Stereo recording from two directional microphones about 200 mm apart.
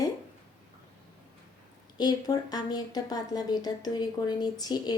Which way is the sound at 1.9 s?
20° left (ahead or behind).